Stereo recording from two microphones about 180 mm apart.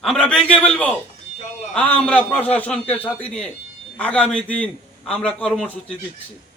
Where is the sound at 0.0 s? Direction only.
5° left (ahead or behind).